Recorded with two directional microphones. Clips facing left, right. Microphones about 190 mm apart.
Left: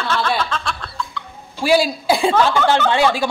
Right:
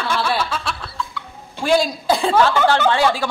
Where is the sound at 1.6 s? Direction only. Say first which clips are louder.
Left 1 dB; 5° left (ahead or behind).